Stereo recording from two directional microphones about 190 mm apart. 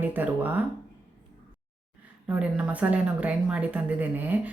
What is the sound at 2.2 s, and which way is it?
Speech, 10° right (ahead or behind).